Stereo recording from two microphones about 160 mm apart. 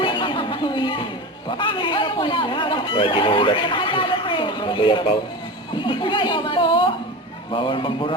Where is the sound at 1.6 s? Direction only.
30° left (ahead or behind).